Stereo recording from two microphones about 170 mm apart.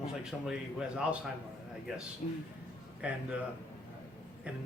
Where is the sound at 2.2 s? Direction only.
45° left (ahead or behind).